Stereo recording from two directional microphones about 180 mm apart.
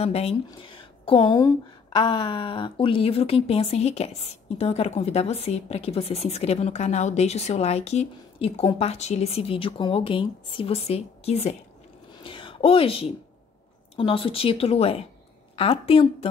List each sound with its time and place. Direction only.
0.0 s a woman's voice: 35° left (ahead or behind)
12.2 s a sound: 30° left (ahead or behind)
13.9 s a woman's voice: 30° left (ahead or behind)